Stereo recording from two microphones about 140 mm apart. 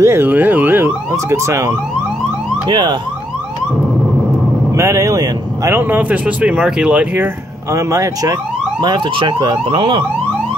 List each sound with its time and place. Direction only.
0.0 s speech: 15° right (ahead or behind)
2.7 s emergency vehicle: 35° right (ahead or behind)
4.7 s speech: 20° right (ahead or behind)
7.7 s speech: 20° right (ahead or behind)
8.8 s emergency vehicle: 35° right (ahead or behind)